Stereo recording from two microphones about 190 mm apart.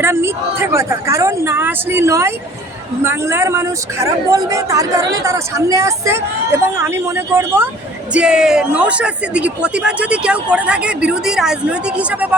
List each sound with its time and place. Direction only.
0.0 s a woman's voice: 15° right (ahead or behind)